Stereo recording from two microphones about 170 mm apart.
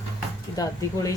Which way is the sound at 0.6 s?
20° left (ahead or behind).